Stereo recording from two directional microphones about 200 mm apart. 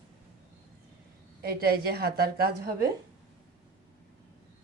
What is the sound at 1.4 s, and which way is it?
Speech, 50° right (ahead or behind).